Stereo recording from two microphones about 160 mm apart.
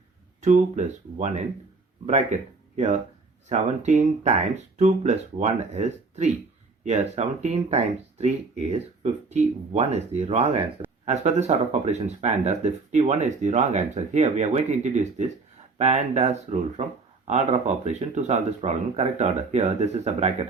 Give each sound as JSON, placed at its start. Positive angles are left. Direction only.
{"t": 0.4, "sound": "speech", "side_deg": -50}
{"t": 2.7, "sound": "speech", "side_deg": -45}